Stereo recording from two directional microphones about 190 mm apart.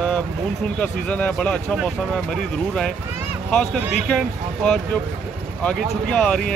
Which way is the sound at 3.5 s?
5° left (ahead or behind).